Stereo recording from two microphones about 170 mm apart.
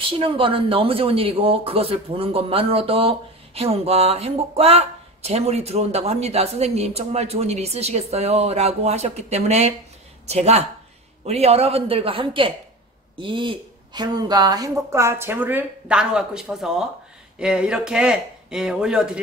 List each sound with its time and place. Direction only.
0.0 s a woman's voice: 30° right (ahead or behind); by 19.1 s 5° right (ahead or behind)